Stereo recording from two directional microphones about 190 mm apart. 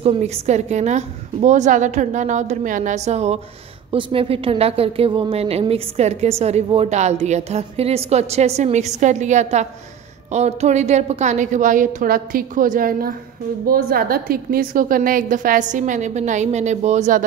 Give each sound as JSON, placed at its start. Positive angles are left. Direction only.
{"t": 0.0, "sound": "a woman's voice", "side_deg": -35}